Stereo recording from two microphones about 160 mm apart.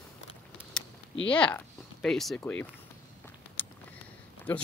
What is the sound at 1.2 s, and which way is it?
Speech, 10° left (ahead or behind).